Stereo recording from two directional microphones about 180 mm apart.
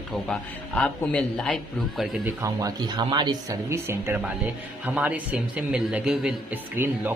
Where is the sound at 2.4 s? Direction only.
20° right (ahead or behind).